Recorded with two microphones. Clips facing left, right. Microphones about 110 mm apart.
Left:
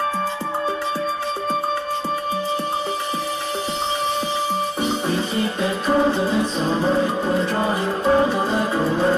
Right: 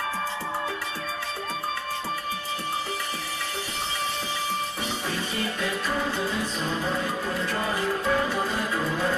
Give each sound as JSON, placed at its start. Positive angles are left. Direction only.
{"t": 4.8, "sound": "music", "side_deg": 30}